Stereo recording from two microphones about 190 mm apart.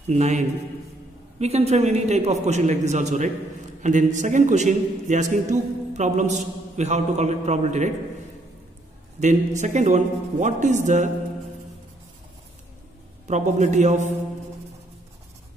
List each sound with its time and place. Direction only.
0.0 s a man's voice: 35° right (ahead or behind)
9.2 s a man's voice: 40° right (ahead or behind)
13.3 s a man's voice: 40° right (ahead or behind)